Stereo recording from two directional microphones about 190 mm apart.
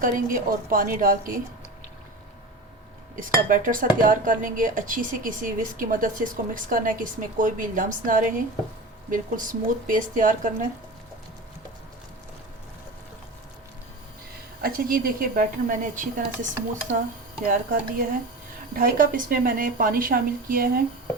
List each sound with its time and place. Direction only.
0.0 s speech: 45° right (ahead or behind)
3.2 s speech: 45° right (ahead or behind)
14.6 s speech: 50° right (ahead or behind)
17.4 s speech: 45° right (ahead or behind)